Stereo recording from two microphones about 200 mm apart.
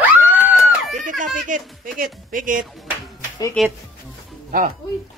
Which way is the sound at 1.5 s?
45° right (ahead or behind).